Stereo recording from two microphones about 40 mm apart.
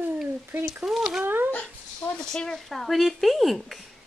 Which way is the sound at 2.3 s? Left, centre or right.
Centre.